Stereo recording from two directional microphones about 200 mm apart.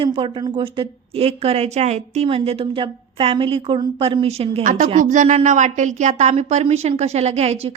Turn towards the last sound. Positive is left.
turn(degrees=-30)  # may be behind; listen again after turning